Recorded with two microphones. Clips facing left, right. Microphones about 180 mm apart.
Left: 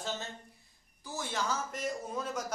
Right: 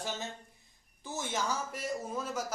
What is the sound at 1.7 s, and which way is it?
Speech, 5° right (ahead or behind).